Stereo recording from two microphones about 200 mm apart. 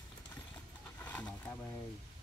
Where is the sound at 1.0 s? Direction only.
10° left (ahead or behind).